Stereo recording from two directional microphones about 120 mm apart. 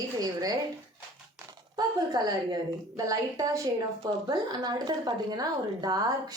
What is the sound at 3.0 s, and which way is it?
A woman's voice, 30° right (ahead or behind).